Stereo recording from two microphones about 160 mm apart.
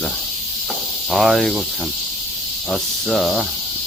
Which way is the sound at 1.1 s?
Centre (ahead or behind).